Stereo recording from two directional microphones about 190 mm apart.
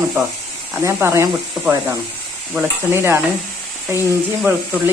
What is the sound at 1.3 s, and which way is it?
Speech, centre (ahead or behind).